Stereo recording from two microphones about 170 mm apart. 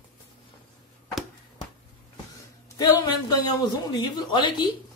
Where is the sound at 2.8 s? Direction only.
25° left (ahead or behind).